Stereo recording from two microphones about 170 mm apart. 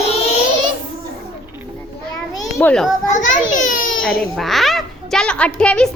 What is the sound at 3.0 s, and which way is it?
Speech, 45° left (ahead or behind).